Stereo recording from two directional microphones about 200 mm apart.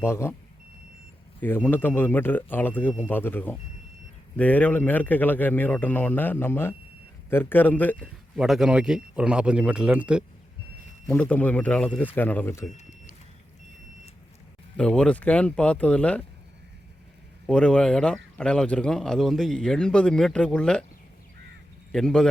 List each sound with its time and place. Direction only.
0.0 s speech: 15° left (ahead or behind)
1.4 s a man's voice: 10° left (ahead or behind)
12.7 s a sound: 35° left (ahead or behind)
14.8 s a man's voice: 5° left (ahead or behind)
17.4 s a man's voice: 5° left (ahead or behind)
21.9 s a man's voice: 5° left (ahead or behind)